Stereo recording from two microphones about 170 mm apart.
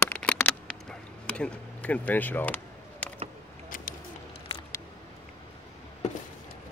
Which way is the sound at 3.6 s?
50° left (ahead or behind).